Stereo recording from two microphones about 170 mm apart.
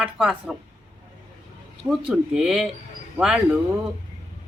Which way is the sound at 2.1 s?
5° right (ahead or behind).